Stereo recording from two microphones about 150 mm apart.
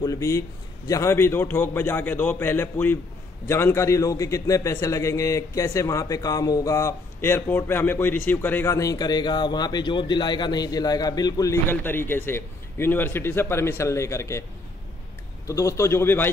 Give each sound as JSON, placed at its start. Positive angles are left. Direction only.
{"t": 0.0, "sound": "a man's voice", "side_deg": 20}
{"t": 15.4, "sound": "a man's voice", "side_deg": 20}